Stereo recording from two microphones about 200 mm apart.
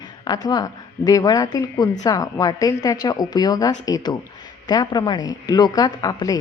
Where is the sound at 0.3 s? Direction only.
20° left (ahead or behind).